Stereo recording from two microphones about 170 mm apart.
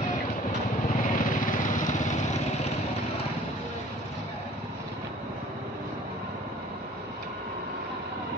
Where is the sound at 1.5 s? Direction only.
50° left (ahead or behind).